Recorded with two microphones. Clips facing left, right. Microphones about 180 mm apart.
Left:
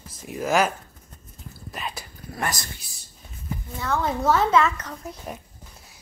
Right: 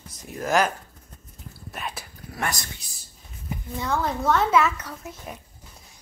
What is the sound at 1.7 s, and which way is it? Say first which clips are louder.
Whispering: left 1 dB; centre (ahead or behind).